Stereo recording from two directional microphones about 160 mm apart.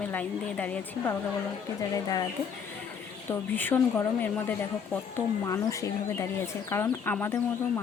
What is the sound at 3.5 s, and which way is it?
Speech, 10° left (ahead or behind).